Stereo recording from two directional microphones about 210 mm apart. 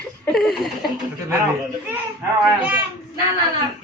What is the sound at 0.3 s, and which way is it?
Laughter, centre (ahead or behind).